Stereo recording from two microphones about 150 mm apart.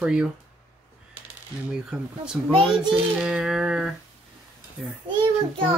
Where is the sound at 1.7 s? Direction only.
5° right (ahead or behind).